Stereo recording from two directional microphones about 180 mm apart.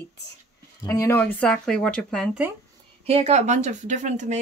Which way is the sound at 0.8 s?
15° left (ahead or behind).